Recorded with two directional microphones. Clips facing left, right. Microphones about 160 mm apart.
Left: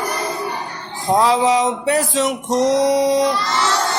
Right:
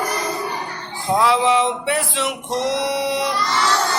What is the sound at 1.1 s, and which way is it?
Music, 40° left (ahead or behind).